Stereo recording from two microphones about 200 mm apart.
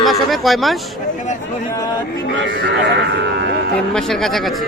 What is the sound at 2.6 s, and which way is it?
Speech, 60° right (ahead or behind).